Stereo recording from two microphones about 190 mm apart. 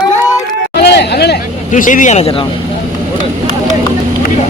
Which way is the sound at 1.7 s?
40° left (ahead or behind).